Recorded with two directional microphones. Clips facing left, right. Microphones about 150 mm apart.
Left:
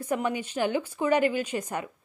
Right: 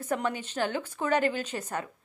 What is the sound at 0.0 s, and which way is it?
A woman's voice, 10° left (ahead or behind).